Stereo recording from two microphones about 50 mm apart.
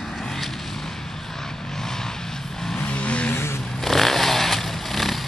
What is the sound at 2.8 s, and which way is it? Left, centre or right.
Vehicle, left.